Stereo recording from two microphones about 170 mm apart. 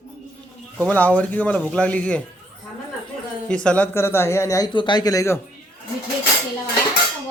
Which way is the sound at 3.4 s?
5° left (ahead or behind).